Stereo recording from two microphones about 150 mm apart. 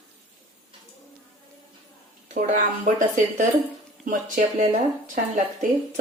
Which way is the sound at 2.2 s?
55° right (ahead or behind).